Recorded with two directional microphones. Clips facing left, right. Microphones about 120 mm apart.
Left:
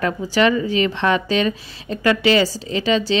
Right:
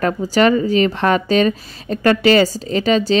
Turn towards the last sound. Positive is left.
turn(degrees=-45)  # may be behind; listen again after turning